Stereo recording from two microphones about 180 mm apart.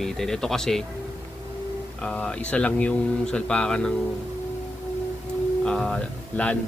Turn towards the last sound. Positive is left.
turn(degrees=5)  # may be behind; listen again after turning